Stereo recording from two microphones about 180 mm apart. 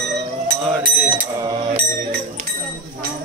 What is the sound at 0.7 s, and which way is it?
Speech, centre (ahead or behind).